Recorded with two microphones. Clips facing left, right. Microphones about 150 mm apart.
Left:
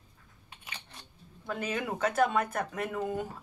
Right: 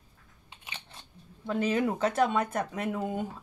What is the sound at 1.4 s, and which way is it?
Speech, 30° right (ahead or behind).